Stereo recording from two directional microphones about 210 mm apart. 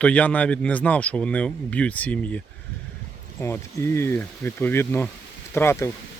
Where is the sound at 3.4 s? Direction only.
10° left (ahead or behind).